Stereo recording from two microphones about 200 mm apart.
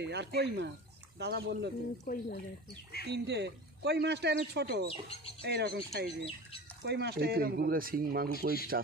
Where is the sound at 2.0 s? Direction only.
45° left (ahead or behind).